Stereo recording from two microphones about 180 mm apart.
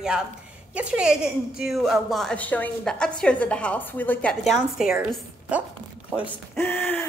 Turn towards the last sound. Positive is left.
turn(degrees=10)  # may be behind; listen again after turning